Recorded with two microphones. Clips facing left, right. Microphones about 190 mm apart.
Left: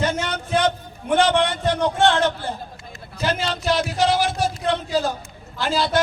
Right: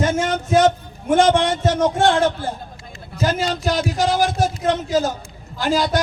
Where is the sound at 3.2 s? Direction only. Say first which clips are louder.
Right 2 dB; 45° right (ahead or behind).